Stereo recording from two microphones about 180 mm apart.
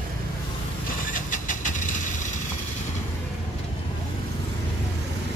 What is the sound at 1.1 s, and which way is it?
Vehicle, 45° left (ahead or behind).